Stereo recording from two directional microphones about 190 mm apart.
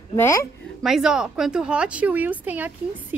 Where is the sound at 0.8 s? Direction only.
5° right (ahead or behind).